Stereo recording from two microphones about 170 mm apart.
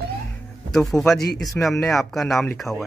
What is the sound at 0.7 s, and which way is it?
Speech, 5° left (ahead or behind).